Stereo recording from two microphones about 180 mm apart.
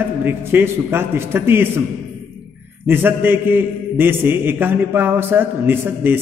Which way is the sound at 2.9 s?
10° right (ahead or behind).